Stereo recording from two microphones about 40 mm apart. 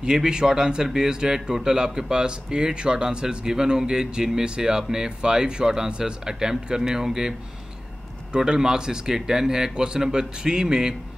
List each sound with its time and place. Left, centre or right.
0.0 s speech: centre
8.5 s speech: centre